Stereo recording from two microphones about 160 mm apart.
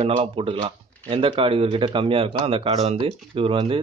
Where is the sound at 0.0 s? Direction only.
35° right (ahead or behind).